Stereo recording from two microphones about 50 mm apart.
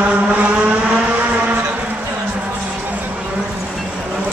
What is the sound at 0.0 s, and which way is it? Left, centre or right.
Vehicle, right.